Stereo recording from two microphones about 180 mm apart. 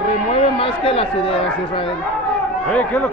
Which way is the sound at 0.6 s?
30° left (ahead or behind).